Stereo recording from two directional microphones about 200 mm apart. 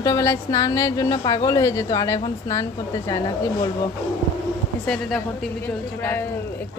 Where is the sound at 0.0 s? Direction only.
15° left (ahead or behind).